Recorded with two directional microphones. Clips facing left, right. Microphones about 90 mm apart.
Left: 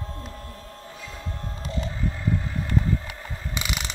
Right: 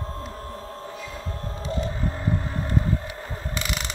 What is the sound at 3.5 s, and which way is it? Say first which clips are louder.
Pulleys: even; 5° left (ahead or behind).